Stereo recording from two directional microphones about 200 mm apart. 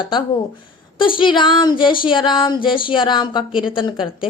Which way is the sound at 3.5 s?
5° right (ahead or behind).